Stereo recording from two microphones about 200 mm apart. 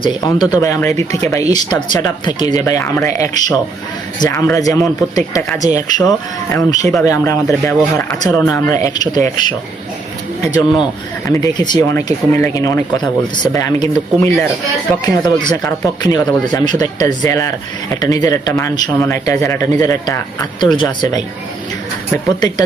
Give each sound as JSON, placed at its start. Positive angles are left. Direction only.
{"t": 0.2, "sound": "speech", "side_deg": 20}